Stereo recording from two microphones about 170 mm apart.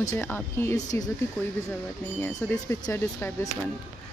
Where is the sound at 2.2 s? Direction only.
15° left (ahead or behind).